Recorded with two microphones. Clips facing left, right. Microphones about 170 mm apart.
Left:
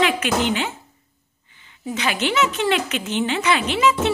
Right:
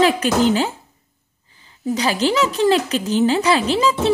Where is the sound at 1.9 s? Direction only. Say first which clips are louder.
Right 5 dB; 35° right (ahead or behind).